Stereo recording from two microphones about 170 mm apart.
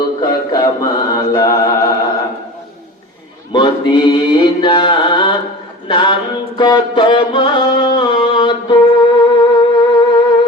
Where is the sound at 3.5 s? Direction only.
25° left (ahead or behind).